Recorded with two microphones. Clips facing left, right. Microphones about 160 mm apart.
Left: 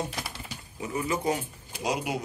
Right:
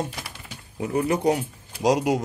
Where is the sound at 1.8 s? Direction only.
90° right.